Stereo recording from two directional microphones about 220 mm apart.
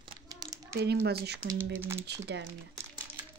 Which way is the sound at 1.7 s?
10° right (ahead or behind).